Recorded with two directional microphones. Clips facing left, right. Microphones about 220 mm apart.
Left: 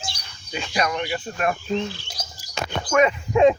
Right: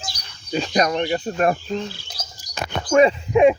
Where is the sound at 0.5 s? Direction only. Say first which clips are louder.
Right 5 dB; 35° right (ahead or behind).